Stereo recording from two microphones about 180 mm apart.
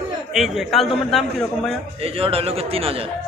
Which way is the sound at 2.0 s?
30° right (ahead or behind).